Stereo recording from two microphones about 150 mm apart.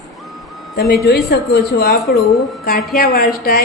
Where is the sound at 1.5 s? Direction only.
90° left.